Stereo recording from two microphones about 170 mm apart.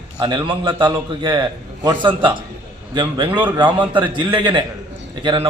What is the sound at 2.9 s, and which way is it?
A man's voice, 30° right (ahead or behind).